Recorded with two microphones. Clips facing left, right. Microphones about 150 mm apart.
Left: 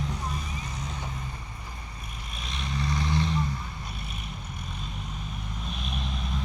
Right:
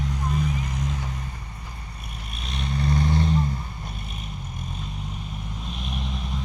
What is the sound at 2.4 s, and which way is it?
Vehicle, 60° right (ahead or behind).